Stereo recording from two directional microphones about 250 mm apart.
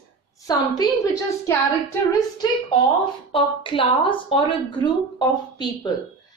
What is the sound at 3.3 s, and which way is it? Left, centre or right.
A woman's voice, left.